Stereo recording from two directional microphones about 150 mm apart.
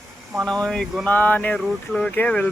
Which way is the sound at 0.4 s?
5° left (ahead or behind).